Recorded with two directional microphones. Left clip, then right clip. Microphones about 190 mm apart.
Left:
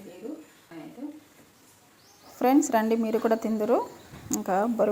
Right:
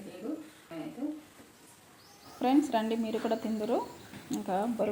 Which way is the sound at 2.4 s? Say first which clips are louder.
Left 5 dB; 35° left (ahead or behind).